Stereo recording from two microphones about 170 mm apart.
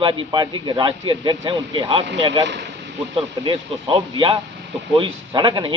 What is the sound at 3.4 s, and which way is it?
Speech, 30° right (ahead or behind).